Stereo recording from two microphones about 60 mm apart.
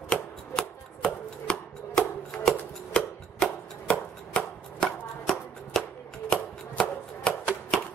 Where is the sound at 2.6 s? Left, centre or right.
Centre.